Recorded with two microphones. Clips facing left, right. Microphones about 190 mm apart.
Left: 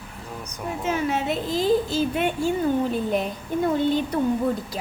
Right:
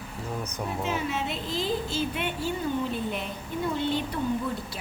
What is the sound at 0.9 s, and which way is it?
A child's voice, 45° left (ahead or behind).